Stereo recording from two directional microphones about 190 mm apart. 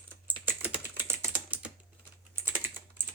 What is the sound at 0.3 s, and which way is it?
Typing, 10° right (ahead or behind).